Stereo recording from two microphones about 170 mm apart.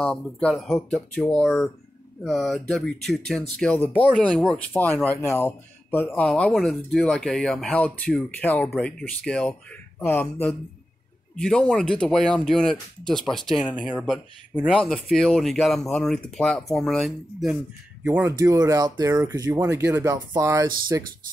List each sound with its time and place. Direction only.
0.0 s speech: 5° left (ahead or behind)
11.3 s speech: 5° left (ahead or behind)
18.0 s speech: 15° right (ahead or behind)